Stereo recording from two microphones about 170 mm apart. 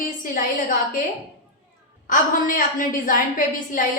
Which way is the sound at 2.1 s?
50° left (ahead or behind).